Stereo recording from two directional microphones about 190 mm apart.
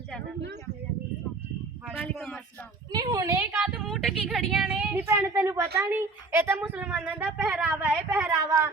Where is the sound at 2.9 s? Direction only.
20° right (ahead or behind).